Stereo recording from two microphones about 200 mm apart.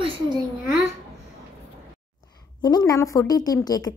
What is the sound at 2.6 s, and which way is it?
A woman's voice, 20° left (ahead or behind).